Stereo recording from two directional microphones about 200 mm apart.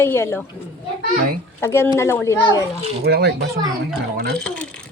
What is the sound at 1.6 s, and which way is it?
A woman's voice, 15° left (ahead or behind).